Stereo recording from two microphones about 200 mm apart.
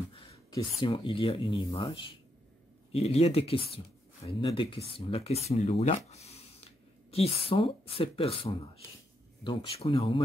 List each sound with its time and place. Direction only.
0.1 s speech: 25° left (ahead or behind)